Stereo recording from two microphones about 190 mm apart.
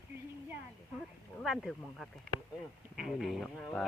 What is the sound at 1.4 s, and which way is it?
Speech, centre (ahead or behind).